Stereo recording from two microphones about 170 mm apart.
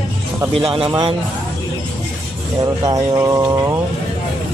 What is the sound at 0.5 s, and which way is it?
Speech, 35° right (ahead or behind).